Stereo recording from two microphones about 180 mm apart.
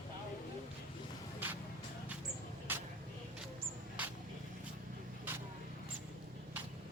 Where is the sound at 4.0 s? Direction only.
5° right (ahead or behind).